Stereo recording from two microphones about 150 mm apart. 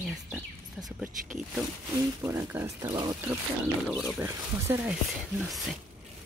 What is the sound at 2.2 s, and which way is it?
Speech, 15° right (ahead or behind).